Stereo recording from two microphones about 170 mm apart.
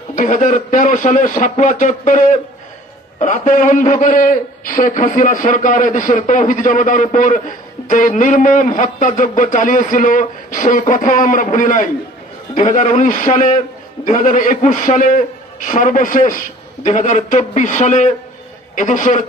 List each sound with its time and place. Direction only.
0.1 s a man's voice: 50° left (ahead or behind)